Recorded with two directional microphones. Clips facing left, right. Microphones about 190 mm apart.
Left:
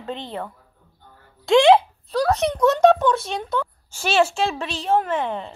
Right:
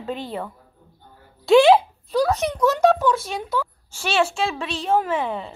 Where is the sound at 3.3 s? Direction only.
5° right (ahead or behind).